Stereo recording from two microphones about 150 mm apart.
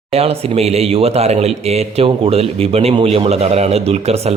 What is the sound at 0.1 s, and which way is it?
Speech, 40° right (ahead or behind).